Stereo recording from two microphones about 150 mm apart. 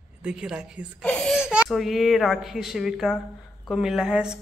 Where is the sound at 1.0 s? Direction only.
5° left (ahead or behind).